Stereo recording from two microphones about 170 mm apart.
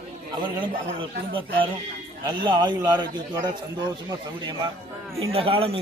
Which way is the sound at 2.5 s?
25° right (ahead or behind).